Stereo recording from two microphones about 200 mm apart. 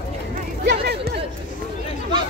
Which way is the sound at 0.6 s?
55° right (ahead or behind).